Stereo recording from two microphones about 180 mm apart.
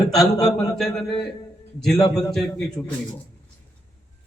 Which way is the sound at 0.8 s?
Centre (ahead or behind).